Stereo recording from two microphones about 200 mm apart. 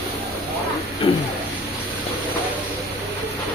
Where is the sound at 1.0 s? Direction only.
25° left (ahead or behind).